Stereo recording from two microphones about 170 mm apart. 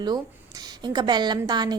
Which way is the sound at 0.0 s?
25° right (ahead or behind).